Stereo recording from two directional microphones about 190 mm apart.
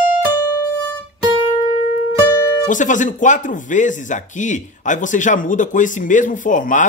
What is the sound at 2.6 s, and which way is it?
Speech, 40° left (ahead or behind).